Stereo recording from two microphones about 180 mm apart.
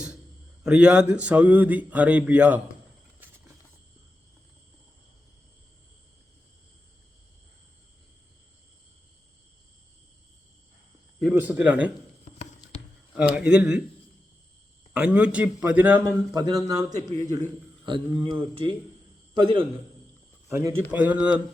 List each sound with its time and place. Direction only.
0.6 s speech: 5° right (ahead or behind)
11.3 s speech: 10° right (ahead or behind)
12.2 s music: 40° left (ahead or behind)
13.1 s speech: 5° right (ahead or behind)
14.9 s a man's voice: 5° right (ahead or behind); by 19.6 s 30° right (ahead or behind)
20.5 s speech: 15° right (ahead or behind)